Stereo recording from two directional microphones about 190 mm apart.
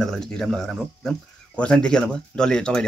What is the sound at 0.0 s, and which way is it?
Speech, centre (ahead or behind).